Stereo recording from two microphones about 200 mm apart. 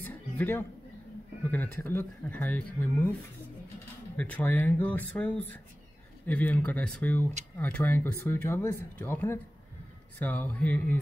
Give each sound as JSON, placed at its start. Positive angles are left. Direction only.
{"t": 0.1, "sound": "a sound", "side_deg": 10}
{"t": 1.5, "sound": "speech", "side_deg": 10}
{"t": 4.2, "sound": "speech", "side_deg": 10}